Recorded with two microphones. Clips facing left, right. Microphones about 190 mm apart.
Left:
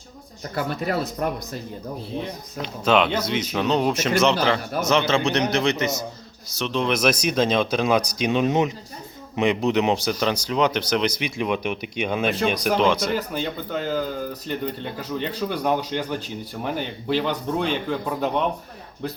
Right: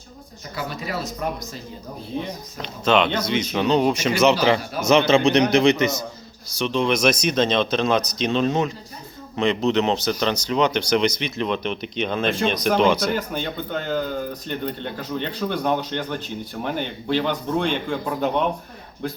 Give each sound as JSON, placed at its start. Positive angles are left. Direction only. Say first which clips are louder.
{"t": 0.5, "sound": "speech", "louder": "left 4 dB", "side_deg": 55}
{"t": 2.2, "sound": "a man's voice", "louder": "left 1 dB", "side_deg": 5}
{"t": 6.5, "sound": "speech", "louder": "right 2 dB", "side_deg": 0}